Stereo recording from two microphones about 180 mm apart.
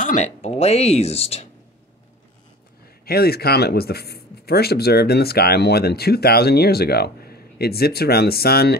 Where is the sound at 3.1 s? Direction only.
60° left (ahead or behind).